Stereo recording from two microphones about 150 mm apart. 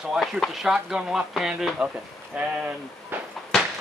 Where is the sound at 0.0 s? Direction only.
5° right (ahead or behind).